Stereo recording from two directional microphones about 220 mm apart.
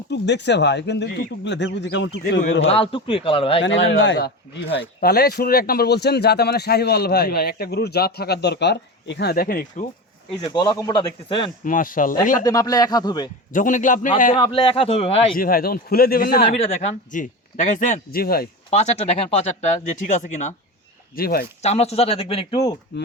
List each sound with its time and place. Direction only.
0.1 s speech: 50° left (ahead or behind)
2.7 s speech: 25° left (ahead or behind)
3.6 s speech: 55° left (ahead or behind)
10.4 s speech: 20° left (ahead or behind)
11.6 s speech: 40° left (ahead or behind)
12.5 s speech: 15° left (ahead or behind)
13.5 s speech: 35° left (ahead or behind)
14.3 s speech: 25° left (ahead or behind)
15.4 s speech: 40° left (ahead or behind)
18.7 s speech: 30° left (ahead or behind)
21.2 s speech: 45° left (ahead or behind)
21.6 s speech: 30° left (ahead or behind)